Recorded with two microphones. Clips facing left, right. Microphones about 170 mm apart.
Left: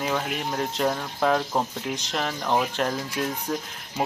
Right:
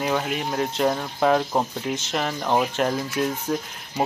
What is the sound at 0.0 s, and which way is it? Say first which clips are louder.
Speech: right 3 dB; centre (ahead or behind).